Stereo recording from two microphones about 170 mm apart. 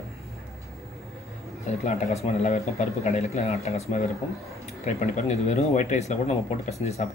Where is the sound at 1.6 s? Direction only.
40° left (ahead or behind).